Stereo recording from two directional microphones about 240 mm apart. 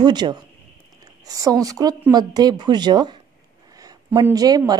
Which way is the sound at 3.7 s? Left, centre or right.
Centre.